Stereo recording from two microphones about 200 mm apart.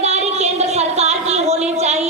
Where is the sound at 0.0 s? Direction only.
35° right (ahead or behind).